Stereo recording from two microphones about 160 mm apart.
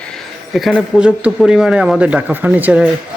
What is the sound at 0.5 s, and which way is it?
Speech, centre (ahead or behind).